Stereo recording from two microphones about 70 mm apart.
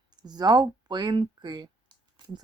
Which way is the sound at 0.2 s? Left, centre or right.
Right.